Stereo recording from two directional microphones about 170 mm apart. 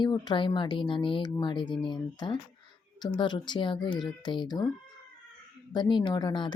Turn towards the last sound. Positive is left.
turn(degrees=25)  # may be behind; listen again after turning